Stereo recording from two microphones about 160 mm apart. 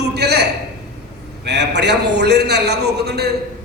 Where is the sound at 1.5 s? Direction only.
90° right.